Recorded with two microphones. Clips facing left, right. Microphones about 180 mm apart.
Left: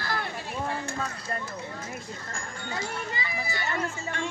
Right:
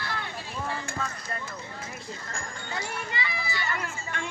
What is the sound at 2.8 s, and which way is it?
Speech, 45° left (ahead or behind).